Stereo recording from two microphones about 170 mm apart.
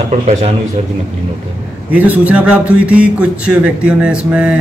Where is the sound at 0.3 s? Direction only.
40° right (ahead or behind).